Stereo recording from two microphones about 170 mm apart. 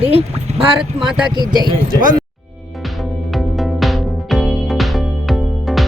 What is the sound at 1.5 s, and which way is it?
Speech, 25° right (ahead or behind).